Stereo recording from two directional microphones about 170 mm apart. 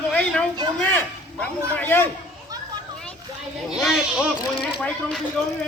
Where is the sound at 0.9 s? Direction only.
5° left (ahead or behind).